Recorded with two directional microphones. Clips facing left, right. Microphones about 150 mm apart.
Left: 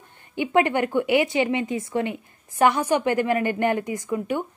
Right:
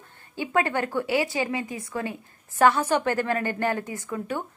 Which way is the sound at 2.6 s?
15° left (ahead or behind).